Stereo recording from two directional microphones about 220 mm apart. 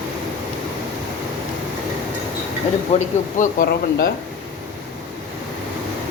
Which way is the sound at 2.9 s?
30° left (ahead or behind).